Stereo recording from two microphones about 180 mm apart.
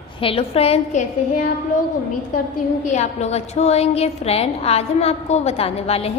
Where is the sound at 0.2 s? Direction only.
30° left (ahead or behind).